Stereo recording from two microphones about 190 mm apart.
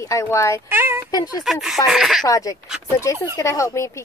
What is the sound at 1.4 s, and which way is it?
Speech, centre (ahead or behind).